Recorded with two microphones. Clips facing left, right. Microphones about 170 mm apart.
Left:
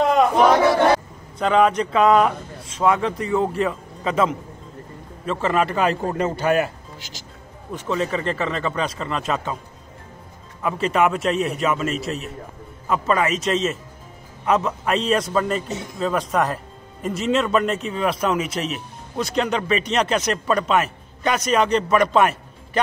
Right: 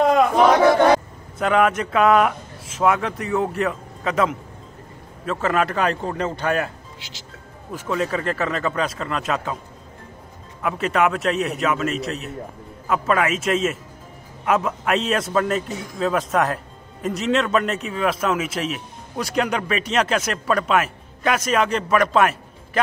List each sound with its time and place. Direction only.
1.4 s a man's voice: 5° right (ahead or behind)
7.0 s music: 45° left (ahead or behind)
7.7 s a man's voice: 5° right (ahead or behind)
10.6 s a man's voice: centre (ahead or behind)
15.7 s speech: 25° left (ahead or behind)
16.0 s a man's voice: centre (ahead or behind)